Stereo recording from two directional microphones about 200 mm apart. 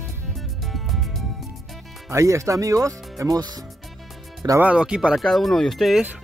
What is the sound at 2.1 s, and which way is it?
Speech, 15° right (ahead or behind).